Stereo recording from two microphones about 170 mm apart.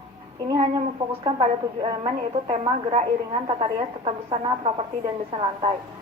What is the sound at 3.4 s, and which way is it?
Speech, 30° right (ahead or behind).